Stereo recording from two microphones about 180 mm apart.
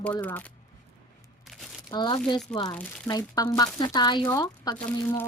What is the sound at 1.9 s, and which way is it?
Speech, 25° left (ahead or behind).